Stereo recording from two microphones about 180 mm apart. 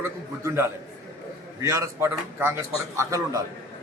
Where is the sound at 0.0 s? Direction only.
15° right (ahead or behind).